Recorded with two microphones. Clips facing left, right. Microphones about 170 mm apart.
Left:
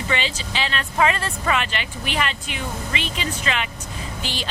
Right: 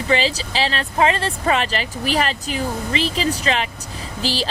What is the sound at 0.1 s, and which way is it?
Speech, 35° right (ahead or behind).